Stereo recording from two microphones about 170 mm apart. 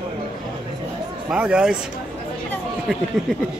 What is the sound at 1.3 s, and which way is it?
Speech, 5° right (ahead or behind).